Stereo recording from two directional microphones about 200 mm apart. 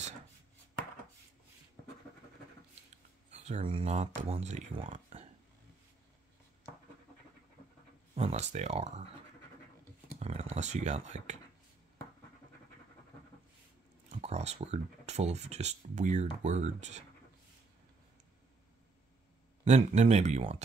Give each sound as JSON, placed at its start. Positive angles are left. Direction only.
{"t": 3.3, "sound": "speech", "side_deg": -35}
{"t": 8.1, "sound": "speech", "side_deg": -35}
{"t": 10.1, "sound": "speech", "side_deg": -30}
{"t": 14.1, "sound": "speech", "side_deg": -35}
{"t": 19.6, "sound": "speech", "side_deg": -35}